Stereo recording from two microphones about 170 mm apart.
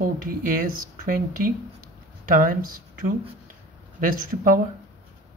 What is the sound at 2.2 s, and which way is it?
Speech, 55° right (ahead or behind).